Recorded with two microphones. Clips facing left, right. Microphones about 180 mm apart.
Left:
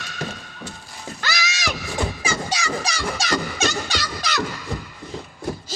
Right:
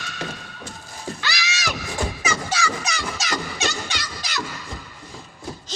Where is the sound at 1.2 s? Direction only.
45° left (ahead or behind).